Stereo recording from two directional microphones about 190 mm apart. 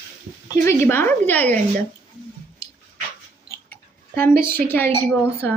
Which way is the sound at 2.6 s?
20° left (ahead or behind).